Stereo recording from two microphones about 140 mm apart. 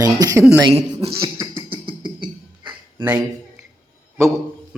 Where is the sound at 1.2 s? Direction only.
20° right (ahead or behind).